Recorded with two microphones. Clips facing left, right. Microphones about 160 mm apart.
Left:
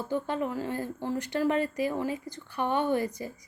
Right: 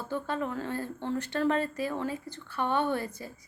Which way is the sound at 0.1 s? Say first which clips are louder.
Left 2 dB; 15° left (ahead or behind).